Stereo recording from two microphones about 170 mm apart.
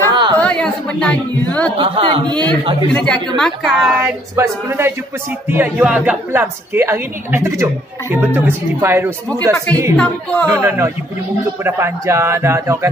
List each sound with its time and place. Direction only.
0.1 s chatter: 25° right (ahead or behind)
0.4 s a woman's voice: 5° left (ahead or behind)
1.8 s speech: 30° right (ahead or behind)
2.9 s a woman's voice: 5° left (ahead or behind)
4.4 s a woman's voice: 15° right (ahead or behind)
9.9 s a woman's voice: 5° left (ahead or behind)
10.4 s a woman's voice: 15° right (ahead or behind)